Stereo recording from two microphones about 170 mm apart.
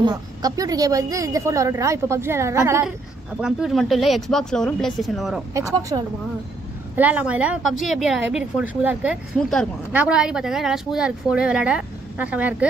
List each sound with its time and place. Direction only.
0.0 s a woman's voice: 20° right (ahead or behind)
3.3 s a woman's voice: 5° right (ahead or behind)
5.5 s a woman's voice: 20° right (ahead or behind)
7.0 s a woman's voice: 10° right (ahead or behind)